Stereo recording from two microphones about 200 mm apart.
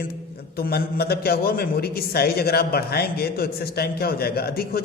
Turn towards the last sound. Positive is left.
turn(degrees=50)  # may be behind; listen again after turning